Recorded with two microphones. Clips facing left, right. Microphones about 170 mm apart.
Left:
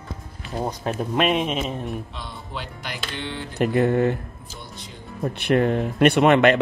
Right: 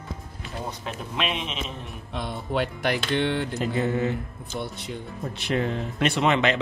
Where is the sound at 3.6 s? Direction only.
60° left (ahead or behind).